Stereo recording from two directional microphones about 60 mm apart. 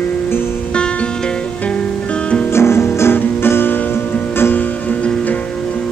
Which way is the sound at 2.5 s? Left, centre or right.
Left.